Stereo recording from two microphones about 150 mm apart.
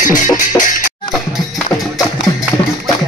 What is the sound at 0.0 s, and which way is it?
Music, 60° left (ahead or behind).